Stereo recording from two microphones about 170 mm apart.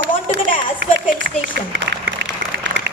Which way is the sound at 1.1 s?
85° right.